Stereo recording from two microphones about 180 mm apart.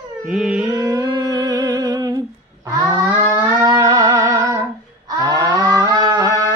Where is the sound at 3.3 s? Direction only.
15° right (ahead or behind).